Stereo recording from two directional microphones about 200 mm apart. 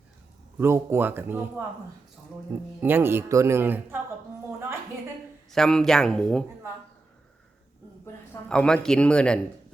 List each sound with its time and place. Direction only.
0.6 s speech: 10° right (ahead or behind)
2.8 s speech: 10° right (ahead or behind)
5.5 s speech: 5° left (ahead or behind)
8.0 s speech: 5° left (ahead or behind)